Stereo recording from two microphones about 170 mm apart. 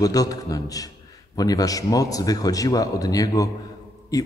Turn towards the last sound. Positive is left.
turn(degrees=20)  # may be behind; listen again after turning